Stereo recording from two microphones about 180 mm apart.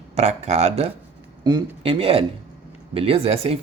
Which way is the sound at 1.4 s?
25° right (ahead or behind).